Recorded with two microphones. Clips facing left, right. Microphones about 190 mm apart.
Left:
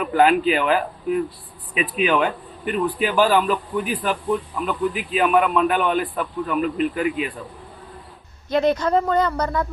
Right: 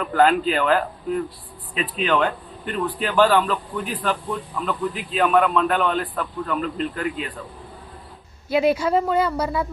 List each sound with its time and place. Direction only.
0.0 s speech: 10° left (ahead or behind)
8.4 s a man's voice: 5° right (ahead or behind)